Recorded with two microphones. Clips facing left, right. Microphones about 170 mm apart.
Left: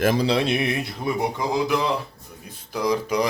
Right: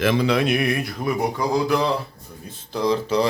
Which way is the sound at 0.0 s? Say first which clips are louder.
Right 1 dB; 40° left (ahead or behind).